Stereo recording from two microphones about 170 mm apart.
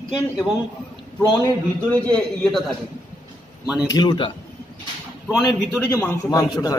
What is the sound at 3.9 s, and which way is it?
Speech, 25° left (ahead or behind).